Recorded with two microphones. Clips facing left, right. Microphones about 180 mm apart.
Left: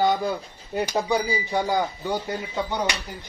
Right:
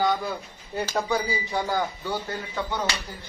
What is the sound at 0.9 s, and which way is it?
Speech, 15° left (ahead or behind).